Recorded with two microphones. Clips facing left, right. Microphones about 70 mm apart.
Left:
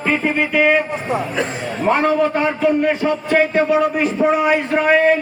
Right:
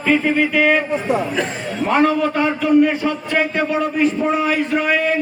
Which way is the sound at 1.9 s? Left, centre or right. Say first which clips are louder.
Left 1 dB; left.